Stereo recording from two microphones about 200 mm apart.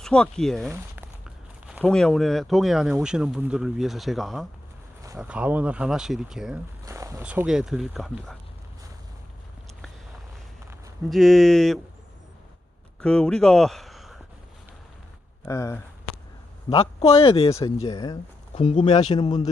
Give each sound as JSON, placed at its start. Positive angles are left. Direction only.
{"t": 0.0, "sound": "speech", "side_deg": 5}
{"t": 0.7, "sound": "a sound", "side_deg": -10}
{"t": 1.6, "sound": "speech", "side_deg": 0}
{"t": 5.0, "sound": "speech", "side_deg": -10}
{"t": 6.8, "sound": "speech", "side_deg": -15}
{"t": 11.1, "sound": "speech", "side_deg": 0}
{"t": 13.0, "sound": "speech", "side_deg": 5}
{"t": 15.4, "sound": "speech", "side_deg": 15}
{"t": 16.6, "sound": "speech", "side_deg": 30}
{"t": 19.1, "sound": "speech", "side_deg": 20}